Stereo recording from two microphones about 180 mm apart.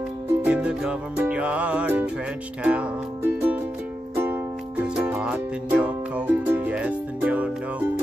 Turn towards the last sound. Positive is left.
turn(degrees=-10)  # may be behind; listen again after turning